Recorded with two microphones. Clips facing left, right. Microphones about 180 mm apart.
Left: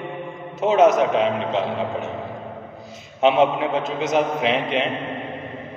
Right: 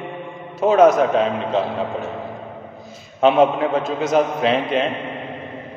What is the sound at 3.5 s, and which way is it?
Speech, 20° left (ahead or behind).